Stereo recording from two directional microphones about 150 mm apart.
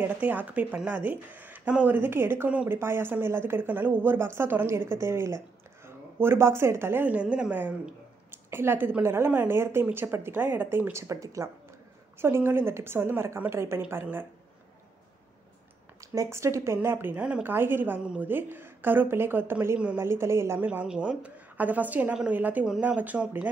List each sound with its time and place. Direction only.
0.0 s speech: 10° right (ahead or behind)
16.0 s speech: 20° right (ahead or behind)